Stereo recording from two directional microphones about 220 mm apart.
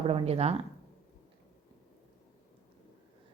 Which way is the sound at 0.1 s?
25° right (ahead or behind).